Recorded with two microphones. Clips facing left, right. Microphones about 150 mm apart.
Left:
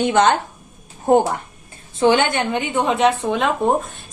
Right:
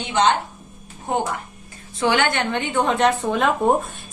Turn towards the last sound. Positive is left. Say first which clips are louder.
# even
turn(degrees=0)  # may be behind; listen again after turning